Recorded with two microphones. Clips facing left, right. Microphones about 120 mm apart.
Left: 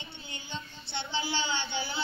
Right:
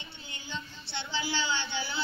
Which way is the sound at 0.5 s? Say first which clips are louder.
Right 1 dB; 20° left (ahead or behind).